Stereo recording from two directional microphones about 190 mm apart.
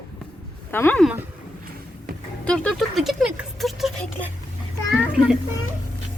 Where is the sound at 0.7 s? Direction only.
10° left (ahead or behind).